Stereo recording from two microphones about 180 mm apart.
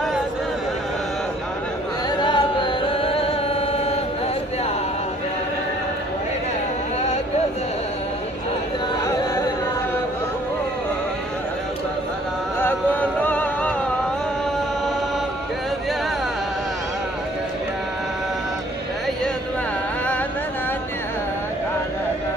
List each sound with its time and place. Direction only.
2.0 s music: 25° left (ahead or behind)
9.0 s music: 20° left (ahead or behind)
12.5 s music: 10° left (ahead or behind)